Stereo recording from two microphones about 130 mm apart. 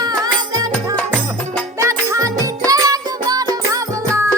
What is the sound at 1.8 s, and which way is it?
Music, 25° right (ahead or behind).